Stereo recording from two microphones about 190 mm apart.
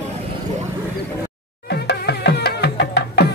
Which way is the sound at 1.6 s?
60° left (ahead or behind).